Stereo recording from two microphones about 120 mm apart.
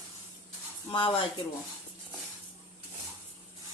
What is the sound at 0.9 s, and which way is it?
Speech, 40° left (ahead or behind).